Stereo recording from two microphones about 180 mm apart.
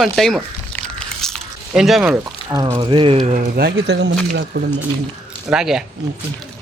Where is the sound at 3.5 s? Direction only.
70° right (ahead or behind).